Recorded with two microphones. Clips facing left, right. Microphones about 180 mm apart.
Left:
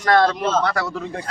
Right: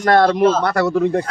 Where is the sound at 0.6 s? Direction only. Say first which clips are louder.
Right 7 dB; 60° right (ahead or behind).